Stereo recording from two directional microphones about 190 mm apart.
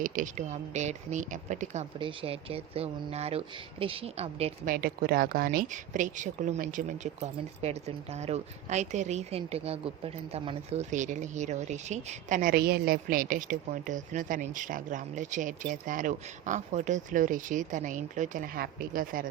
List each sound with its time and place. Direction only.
0.0 s speech: 45° right (ahead or behind)
4.7 s speech: 50° right (ahead or behind)